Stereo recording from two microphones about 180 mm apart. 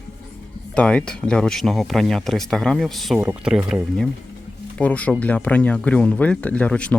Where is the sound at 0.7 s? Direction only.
5° left (ahead or behind).